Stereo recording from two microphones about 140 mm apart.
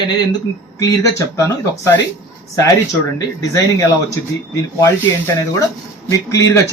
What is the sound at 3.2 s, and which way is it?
Speech, 20° left (ahead or behind).